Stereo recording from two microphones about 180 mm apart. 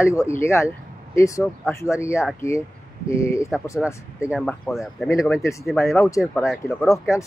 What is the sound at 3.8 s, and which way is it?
Speech, 5° right (ahead or behind).